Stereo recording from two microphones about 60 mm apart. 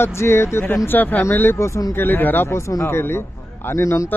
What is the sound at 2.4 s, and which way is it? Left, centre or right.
Speech, left.